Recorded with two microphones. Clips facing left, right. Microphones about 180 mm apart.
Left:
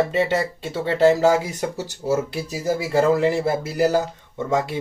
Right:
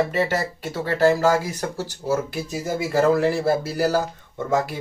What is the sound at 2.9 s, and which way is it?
Speech, 20° left (ahead or behind).